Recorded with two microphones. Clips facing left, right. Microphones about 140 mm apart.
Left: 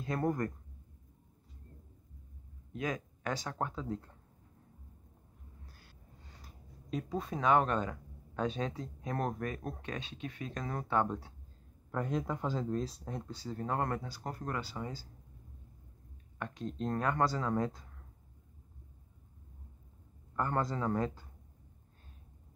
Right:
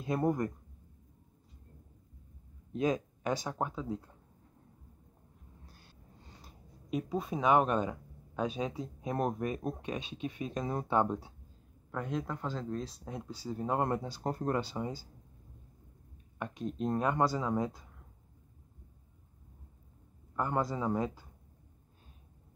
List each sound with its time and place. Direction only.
0.0 s speech: 15° right (ahead or behind)
2.7 s speech: 25° right (ahead or behind); by 4.2 s 10° right (ahead or behind)
5.7 s a sound: 25° right (ahead or behind)
6.9 s speech: 10° right (ahead or behind)
11.9 s speech: centre (ahead or behind); by 15.0 s 15° right (ahead or behind)
16.3 s speech: 15° right (ahead or behind)
20.3 s speech: 10° right (ahead or behind)